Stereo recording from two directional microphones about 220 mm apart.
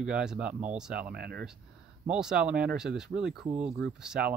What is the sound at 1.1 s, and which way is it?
Speech, 45° right (ahead or behind).